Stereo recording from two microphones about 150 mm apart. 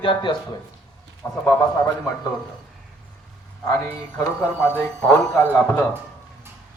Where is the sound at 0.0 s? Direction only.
35° left (ahead or behind).